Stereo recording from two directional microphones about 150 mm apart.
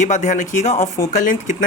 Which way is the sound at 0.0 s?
55° left (ahead or behind).